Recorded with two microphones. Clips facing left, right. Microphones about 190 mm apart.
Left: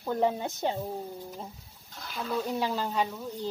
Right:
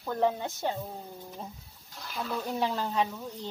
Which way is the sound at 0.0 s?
15° left (ahead or behind).